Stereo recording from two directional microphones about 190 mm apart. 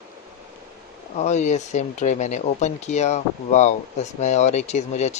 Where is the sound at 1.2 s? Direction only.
35° left (ahead or behind).